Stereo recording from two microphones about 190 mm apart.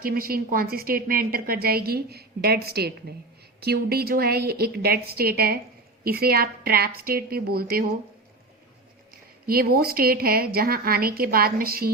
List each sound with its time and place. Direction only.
0.0 s a woman's voice: 50° right (ahead or behind)
9.5 s a woman's voice: 50° right (ahead or behind)